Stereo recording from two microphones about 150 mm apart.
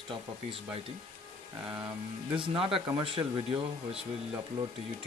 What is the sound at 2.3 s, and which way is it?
Speech, 35° right (ahead or behind).